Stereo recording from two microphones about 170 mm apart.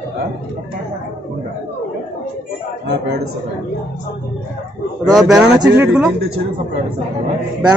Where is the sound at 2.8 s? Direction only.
90° right.